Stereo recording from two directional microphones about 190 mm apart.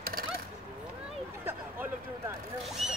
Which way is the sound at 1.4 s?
10° right (ahead or behind).